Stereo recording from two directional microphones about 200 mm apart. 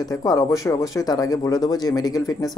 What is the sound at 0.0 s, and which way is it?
Speech, 20° left (ahead or behind).